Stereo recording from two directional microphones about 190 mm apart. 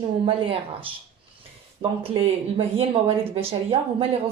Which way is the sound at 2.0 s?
30° right (ahead or behind).